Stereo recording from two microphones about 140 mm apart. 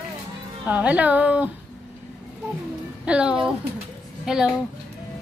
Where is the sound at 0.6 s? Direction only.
10° right (ahead or behind).